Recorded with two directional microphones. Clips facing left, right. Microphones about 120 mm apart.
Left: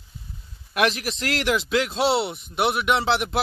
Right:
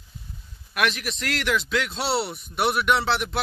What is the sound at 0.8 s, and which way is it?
Speech, 30° left (ahead or behind).